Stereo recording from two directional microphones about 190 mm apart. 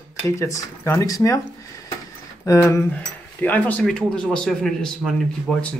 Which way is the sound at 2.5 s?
15° left (ahead or behind).